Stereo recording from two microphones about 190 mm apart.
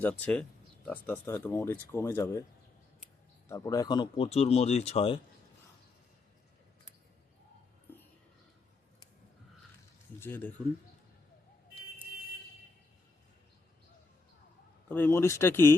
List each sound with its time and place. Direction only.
0.0 s speech: 5° left (ahead or behind)
3.5 s speech: 15° left (ahead or behind)
7.9 s a sound: 10° left (ahead or behind)
10.2 s speech: 10° left (ahead or behind)
14.8 s speech: 10° left (ahead or behind)